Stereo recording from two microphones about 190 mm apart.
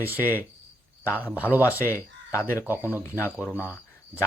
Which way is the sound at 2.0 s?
10° left (ahead or behind).